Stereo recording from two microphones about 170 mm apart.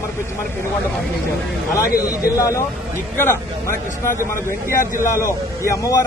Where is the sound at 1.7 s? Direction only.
60° left (ahead or behind).